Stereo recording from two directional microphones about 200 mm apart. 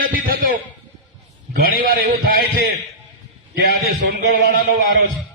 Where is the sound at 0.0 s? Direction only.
45° right (ahead or behind).